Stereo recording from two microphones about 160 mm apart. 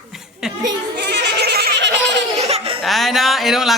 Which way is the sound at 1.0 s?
90° right.